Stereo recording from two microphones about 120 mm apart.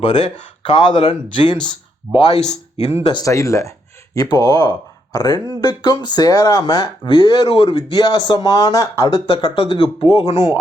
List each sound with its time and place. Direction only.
0.0 s speech: 40° left (ahead or behind)
2.1 s speech: 35° right (ahead or behind)
2.4 s speech: 65° left (ahead or behind)
3.2 s speech: 25° left (ahead or behind)
9.2 s speech: 50° left (ahead or behind)